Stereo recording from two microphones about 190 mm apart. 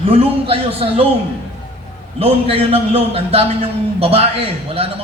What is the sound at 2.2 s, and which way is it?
A man's voice, 30° right (ahead or behind).